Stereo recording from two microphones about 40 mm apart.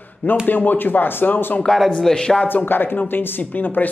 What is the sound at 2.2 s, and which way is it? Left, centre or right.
Speech, left.